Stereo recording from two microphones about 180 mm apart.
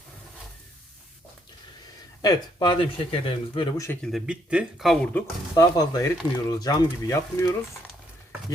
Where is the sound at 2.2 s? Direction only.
25° left (ahead or behind).